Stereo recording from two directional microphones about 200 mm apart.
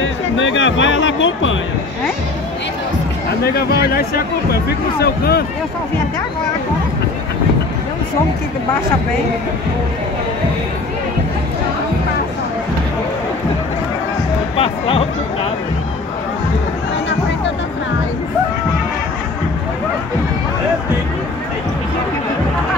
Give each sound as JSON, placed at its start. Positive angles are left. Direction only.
{"t": 0.0, "sound": "speech", "side_deg": 70}
{"t": 3.5, "sound": "speech", "side_deg": 50}
{"t": 14.6, "sound": "speech", "side_deg": 25}